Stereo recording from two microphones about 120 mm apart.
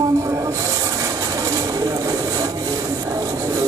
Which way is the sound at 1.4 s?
30° right (ahead or behind).